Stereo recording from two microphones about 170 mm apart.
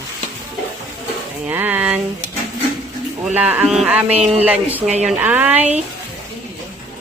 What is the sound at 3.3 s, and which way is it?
Speech, 10° right (ahead or behind).